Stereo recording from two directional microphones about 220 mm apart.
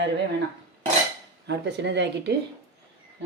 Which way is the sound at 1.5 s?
50° right (ahead or behind).